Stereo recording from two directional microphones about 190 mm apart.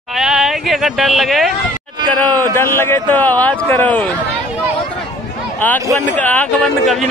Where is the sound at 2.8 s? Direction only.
10° left (ahead or behind).